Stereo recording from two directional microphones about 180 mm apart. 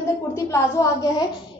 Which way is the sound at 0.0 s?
15° left (ahead or behind).